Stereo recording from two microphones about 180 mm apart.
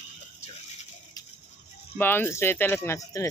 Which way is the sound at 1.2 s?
20° left (ahead or behind).